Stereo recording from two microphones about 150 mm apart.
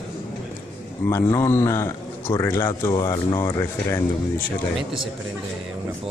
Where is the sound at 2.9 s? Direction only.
30° left (ahead or behind).